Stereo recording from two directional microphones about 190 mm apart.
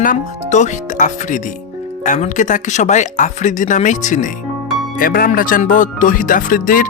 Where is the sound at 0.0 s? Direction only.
40° left (ahead or behind).